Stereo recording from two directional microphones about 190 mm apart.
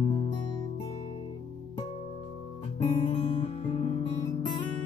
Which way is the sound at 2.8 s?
25° left (ahead or behind).